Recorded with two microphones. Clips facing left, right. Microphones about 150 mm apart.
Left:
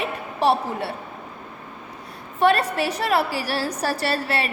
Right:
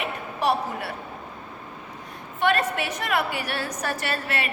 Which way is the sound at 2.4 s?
35° left (ahead or behind).